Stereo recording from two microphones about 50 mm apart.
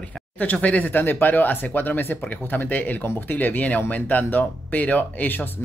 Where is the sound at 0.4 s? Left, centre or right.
Left.